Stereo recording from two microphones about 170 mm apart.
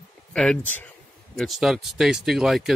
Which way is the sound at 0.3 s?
5° left (ahead or behind).